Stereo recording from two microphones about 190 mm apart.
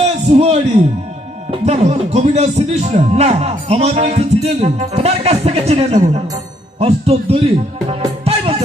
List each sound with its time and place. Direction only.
0.0 s a man's voice: 35° right (ahead or behind)
7.9 s music: 30° right (ahead or behind)